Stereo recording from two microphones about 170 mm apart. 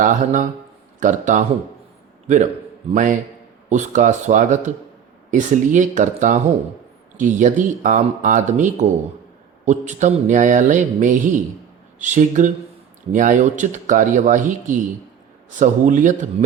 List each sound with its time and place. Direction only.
0.0 s a man's voice: 50° right (ahead or behind)